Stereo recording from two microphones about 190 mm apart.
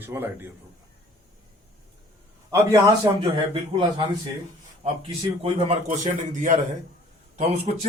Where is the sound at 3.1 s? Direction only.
25° right (ahead or behind).